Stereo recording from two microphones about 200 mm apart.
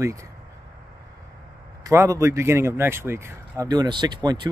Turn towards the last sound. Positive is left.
turn(degrees=-20)  # may be behind; listen again after turning